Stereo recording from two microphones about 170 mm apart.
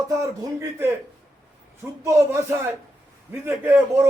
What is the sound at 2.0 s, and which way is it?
A man's voice, 15° right (ahead or behind).